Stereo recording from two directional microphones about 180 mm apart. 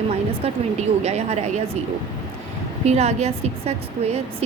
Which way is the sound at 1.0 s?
35° right (ahead or behind).